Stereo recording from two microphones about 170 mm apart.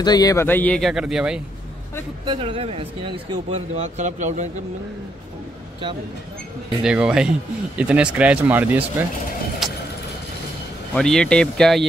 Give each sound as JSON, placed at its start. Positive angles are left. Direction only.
{"t": 0.0, "sound": "speech", "side_deg": 25}
{"t": 2.2, "sound": "speech", "side_deg": -30}
{"t": 6.8, "sound": "speech", "side_deg": -5}
{"t": 9.6, "sound": "vehicle", "side_deg": 0}
{"t": 11.0, "sound": "speech", "side_deg": 5}